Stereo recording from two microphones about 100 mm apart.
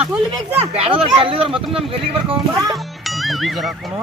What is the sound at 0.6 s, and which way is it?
Speech, 65° right (ahead or behind).